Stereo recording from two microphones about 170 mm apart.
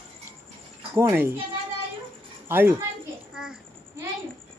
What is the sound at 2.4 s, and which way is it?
Speech, 10° right (ahead or behind).